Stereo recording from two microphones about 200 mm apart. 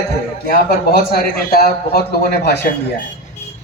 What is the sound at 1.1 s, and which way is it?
A man's voice, 50° left (ahead or behind).